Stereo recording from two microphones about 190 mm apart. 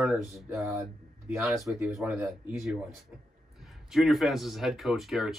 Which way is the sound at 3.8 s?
Centre (ahead or behind).